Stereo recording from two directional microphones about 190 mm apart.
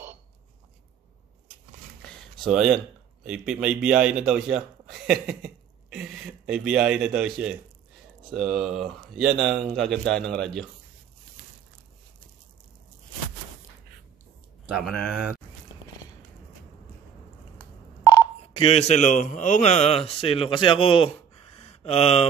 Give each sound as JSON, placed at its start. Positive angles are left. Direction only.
{"t": 2.4, "sound": "speech", "side_deg": 0}
{"t": 14.7, "sound": "speech", "side_deg": 0}
{"t": 18.0, "sound": "telephone dialing", "side_deg": 15}
{"t": 18.6, "sound": "a man's voice", "side_deg": 35}